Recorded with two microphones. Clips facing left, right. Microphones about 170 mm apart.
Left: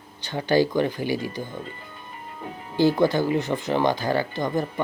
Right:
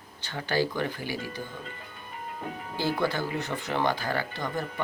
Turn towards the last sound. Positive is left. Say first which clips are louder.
# left 7 dB
turn(degrees=20)  # may be behind; listen again after turning